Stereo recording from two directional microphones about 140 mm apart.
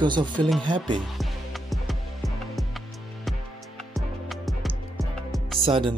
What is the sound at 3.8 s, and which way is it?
Music, centre (ahead or behind).